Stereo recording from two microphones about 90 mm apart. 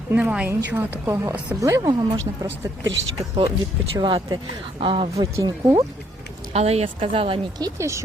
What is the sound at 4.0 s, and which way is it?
Speech, 60° right (ahead or behind).